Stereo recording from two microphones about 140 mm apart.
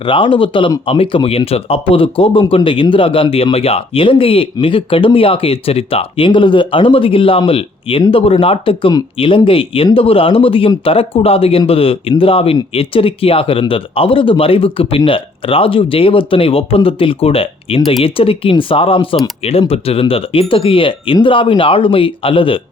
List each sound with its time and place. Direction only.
0.0 s speech: 35° left (ahead or behind)